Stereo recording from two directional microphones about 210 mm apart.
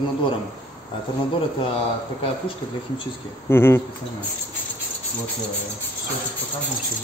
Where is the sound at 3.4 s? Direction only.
10° left (ahead or behind).